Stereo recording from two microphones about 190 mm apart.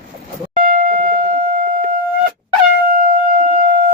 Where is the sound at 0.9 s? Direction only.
45° right (ahead or behind).